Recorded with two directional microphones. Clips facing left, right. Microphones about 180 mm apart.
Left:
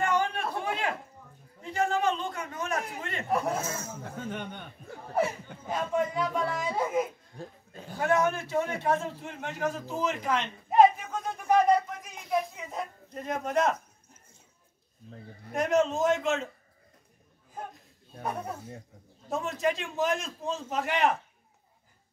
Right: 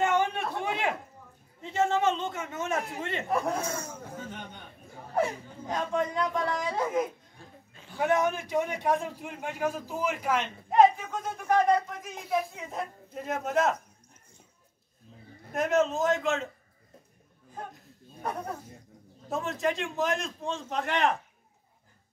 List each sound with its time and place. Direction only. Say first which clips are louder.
0.0 s a sound: right 1 dB; 20° right (ahead or behind)
1.6 s a man's voice: right 2 dB; 25° right (ahead or behind)
3.3 s speech: left 1 dB; 5° left (ahead or behind)
4.3 s speech: left 5 dB; 60° left (ahead or behind)
5.1 s speech: even; 5° left (ahead or behind)
7.3 s pig: left 8 dB; 40° left (ahead or behind)
8.0 s a man's voice: even; 15° right (ahead or behind)
10.7 s a sound: even; centre (ahead or behind)
12.0 s speech: even; centre (ahead or behind)
15.5 s speech: even; centre (ahead or behind)
19.2 s speech: left 1 dB; centre (ahead or behind)